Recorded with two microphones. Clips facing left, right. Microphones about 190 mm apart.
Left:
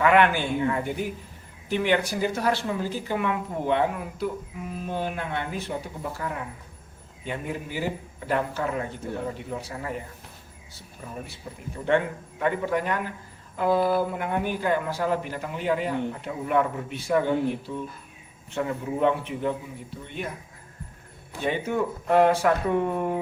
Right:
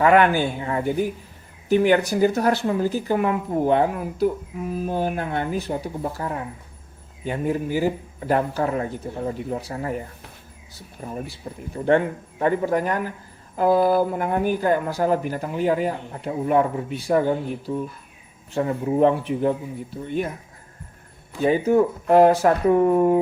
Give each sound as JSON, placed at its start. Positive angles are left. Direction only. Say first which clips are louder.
{"t": 0.0, "sound": "speech", "louder": "right 4 dB", "side_deg": -40}
{"t": 11.0, "sound": "speech", "louder": "right 7 dB", "side_deg": -35}
{"t": 11.4, "sound": "speech", "louder": "right 5 dB", "side_deg": -45}
{"t": 21.4, "sound": "speech", "louder": "right 8 dB", "side_deg": -35}